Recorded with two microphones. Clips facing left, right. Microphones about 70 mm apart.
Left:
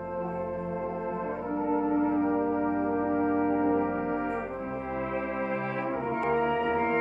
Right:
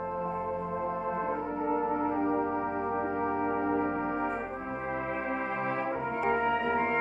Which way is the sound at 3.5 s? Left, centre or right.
Centre.